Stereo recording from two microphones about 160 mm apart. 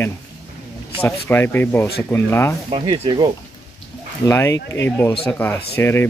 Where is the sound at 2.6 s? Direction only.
30° right (ahead or behind).